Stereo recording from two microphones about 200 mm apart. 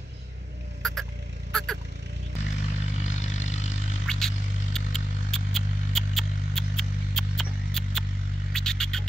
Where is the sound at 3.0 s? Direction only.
35° left (ahead or behind).